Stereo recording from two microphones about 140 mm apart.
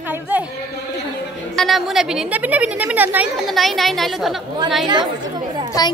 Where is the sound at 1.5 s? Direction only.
Centre (ahead or behind).